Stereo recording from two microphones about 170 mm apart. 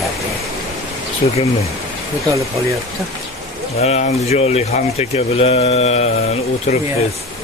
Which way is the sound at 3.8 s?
40° left (ahead or behind).